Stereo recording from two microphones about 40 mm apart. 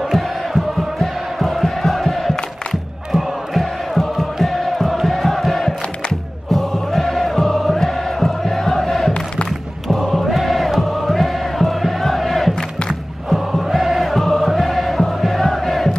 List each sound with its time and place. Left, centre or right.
0.1 s music: centre
3.1 s crowd: centre
4.0 s music: centre
7.7 s a sound: centre
10.1 s music: centre
10.8 s crowd: centre
13.3 s music: centre